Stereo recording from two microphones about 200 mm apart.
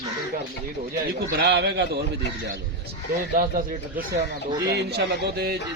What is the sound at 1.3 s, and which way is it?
Speech, 55° right (ahead or behind).